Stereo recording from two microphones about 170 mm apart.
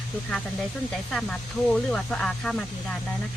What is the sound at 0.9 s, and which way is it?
Speech, 5° left (ahead or behind).